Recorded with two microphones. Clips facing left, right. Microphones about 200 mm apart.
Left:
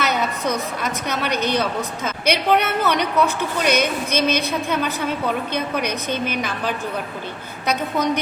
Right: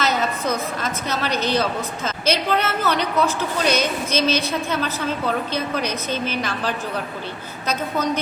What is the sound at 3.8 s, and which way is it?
Speech, 60° left (ahead or behind).